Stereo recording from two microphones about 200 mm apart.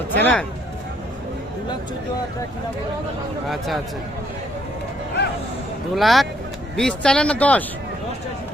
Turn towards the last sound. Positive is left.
turn(degrees=5)  # may be behind; listen again after turning